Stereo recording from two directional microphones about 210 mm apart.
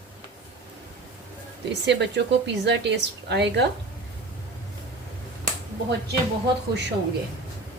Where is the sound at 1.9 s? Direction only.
55° right (ahead or behind).